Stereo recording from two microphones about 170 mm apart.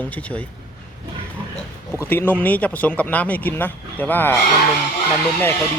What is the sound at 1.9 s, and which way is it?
Speech, 15° left (ahead or behind).